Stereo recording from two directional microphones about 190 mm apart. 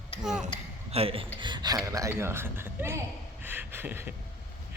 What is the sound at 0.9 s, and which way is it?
A man's voice, 30° right (ahead or behind).